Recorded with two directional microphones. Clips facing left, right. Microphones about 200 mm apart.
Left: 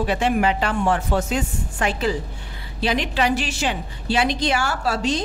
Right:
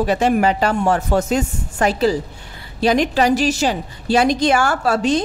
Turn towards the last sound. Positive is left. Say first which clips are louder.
# right 5 dB
turn(degrees=-50)  # may be behind; listen again after turning